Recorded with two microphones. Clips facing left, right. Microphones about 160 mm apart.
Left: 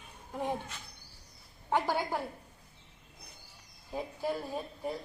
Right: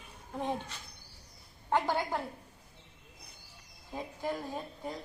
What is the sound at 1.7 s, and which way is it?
Speech, 10° left (ahead or behind).